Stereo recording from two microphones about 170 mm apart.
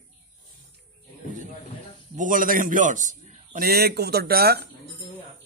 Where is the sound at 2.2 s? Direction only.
50° right (ahead or behind); by 4.7 s 65° right (ahead or behind).